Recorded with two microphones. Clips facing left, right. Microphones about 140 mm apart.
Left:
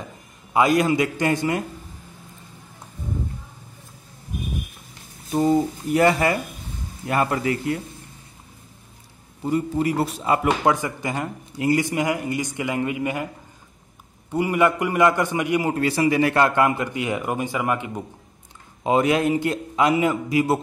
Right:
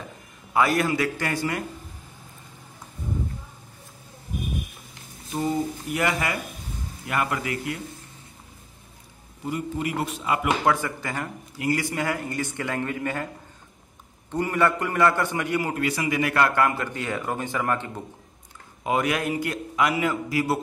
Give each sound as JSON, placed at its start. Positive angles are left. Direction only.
{"t": 0.5, "sound": "a man's voice", "side_deg": 20}
{"t": 5.9, "sound": "a man's voice", "side_deg": 35}
{"t": 9.5, "sound": "a man's voice", "side_deg": 35}
{"t": 10.6, "sound": "speech", "side_deg": 20}
{"t": 14.3, "sound": "speech", "side_deg": 10}
{"t": 15.7, "sound": "speech", "side_deg": 30}
{"t": 18.9, "sound": "a man's voice", "side_deg": 25}